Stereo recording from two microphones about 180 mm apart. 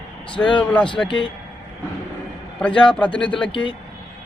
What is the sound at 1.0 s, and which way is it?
Speech, 25° left (ahead or behind).